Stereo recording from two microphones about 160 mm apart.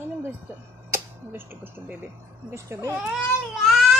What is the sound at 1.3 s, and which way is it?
A child's voice, 15° right (ahead or behind).